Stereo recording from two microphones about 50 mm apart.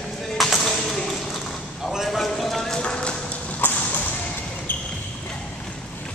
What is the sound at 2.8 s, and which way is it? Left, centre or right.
Clip-clop, left.